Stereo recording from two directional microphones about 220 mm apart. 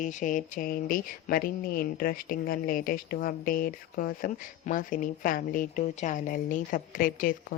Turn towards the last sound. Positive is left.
turn(degrees=40)  # may be behind; listen again after turning